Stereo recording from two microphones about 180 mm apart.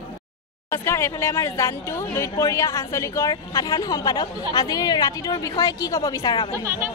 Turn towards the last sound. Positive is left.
turn(degrees=-15)  # may be behind; listen again after turning